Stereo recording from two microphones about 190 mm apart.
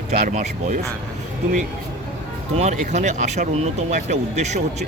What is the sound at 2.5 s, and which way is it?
Speech, 40° right (ahead or behind).